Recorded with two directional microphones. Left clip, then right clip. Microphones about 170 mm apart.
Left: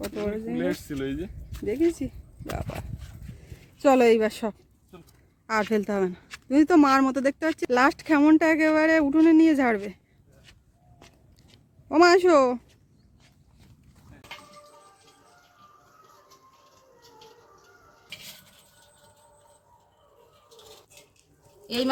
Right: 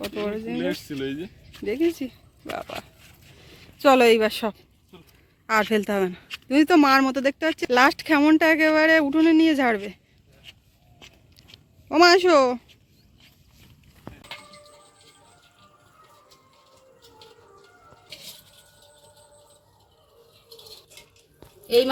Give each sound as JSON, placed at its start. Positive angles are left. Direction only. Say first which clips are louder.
{"t": 0.0, "sound": "speech", "louder": "right 2 dB", "side_deg": 10}
{"t": 0.5, "sound": "speech", "louder": "right 1 dB", "side_deg": 15}
{"t": 1.5, "sound": "speech", "louder": "right 1 dB", "side_deg": 0}
{"t": 11.3, "sound": "a sound", "louder": "right 8 dB", "side_deg": 10}